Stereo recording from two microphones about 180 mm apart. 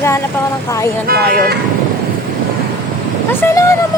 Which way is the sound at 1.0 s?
55° right (ahead or behind).